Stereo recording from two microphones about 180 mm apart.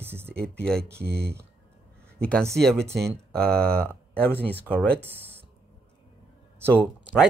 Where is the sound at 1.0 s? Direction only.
60° right (ahead or behind).